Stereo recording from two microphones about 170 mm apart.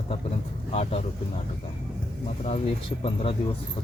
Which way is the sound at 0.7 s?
35° left (ahead or behind).